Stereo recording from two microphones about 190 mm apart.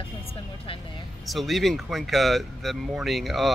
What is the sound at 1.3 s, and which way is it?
Speech, centre (ahead or behind).